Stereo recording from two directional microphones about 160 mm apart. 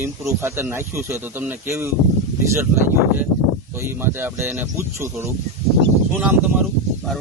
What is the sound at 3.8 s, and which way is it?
Speech, 15° right (ahead or behind).